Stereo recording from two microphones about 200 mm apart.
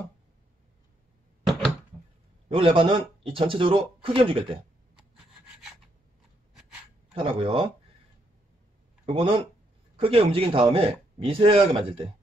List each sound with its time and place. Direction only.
2.5 s speech: 25° right (ahead or behind)
7.2 s speech: 25° right (ahead or behind)
9.0 s speech: 25° right (ahead or behind)